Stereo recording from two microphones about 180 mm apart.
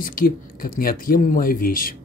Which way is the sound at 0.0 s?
50° left (ahead or behind).